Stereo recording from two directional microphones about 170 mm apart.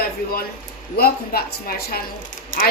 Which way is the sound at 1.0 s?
65° left (ahead or behind).